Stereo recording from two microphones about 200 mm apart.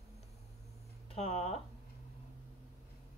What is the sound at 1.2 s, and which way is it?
Speech, 30° left (ahead or behind).